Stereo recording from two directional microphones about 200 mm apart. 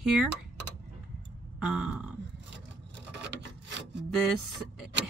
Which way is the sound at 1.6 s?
5° right (ahead or behind).